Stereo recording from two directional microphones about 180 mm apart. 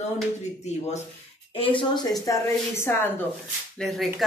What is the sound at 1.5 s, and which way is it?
Speech, 30° left (ahead or behind).